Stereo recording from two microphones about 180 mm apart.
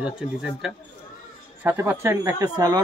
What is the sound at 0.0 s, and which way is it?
A man's voice, 5° right (ahead or behind).